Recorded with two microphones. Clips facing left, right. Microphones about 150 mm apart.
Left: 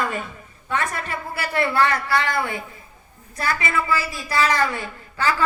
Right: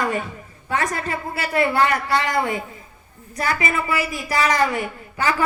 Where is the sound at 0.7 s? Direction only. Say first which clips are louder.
Right 2 dB; 25° right (ahead or behind).